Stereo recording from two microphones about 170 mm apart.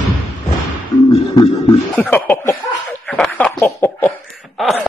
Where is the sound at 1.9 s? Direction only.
10° left (ahead or behind).